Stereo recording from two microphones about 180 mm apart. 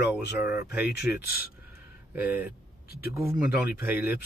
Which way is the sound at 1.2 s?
55° left (ahead or behind).